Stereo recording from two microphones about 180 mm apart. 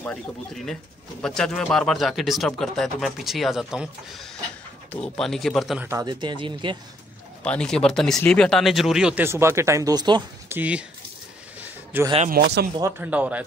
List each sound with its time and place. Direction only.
0.0 s speech: 5° left (ahead or behind)
5.9 s speech: 20° right (ahead or behind)
7.4 s speech: 5° left (ahead or behind); by 10.2 s 25° right (ahead or behind)
10.5 s speech: 10° right (ahead or behind)
11.6 s a sound: 10° right (ahead or behind)
12.3 s speech: 65° right (ahead or behind)
12.9 s speech: 10° right (ahead or behind)